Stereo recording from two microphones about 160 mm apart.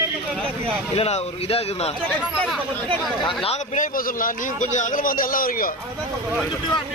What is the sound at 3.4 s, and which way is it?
Speech, 50° left (ahead or behind).